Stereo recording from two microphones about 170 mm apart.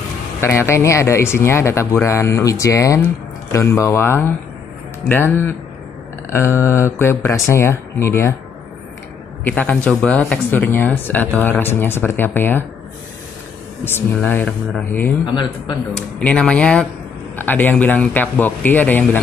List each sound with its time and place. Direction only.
0.4 s speech: 15° left (ahead or behind)
9.5 s speech: 10° left (ahead or behind)
13.8 s speech: 10° left (ahead or behind)
16.2 s speech: 5° left (ahead or behind)